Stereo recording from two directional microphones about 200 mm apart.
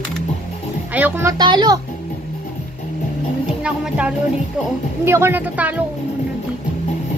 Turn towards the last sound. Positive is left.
turn(degrees=-10)  # may be behind; listen again after turning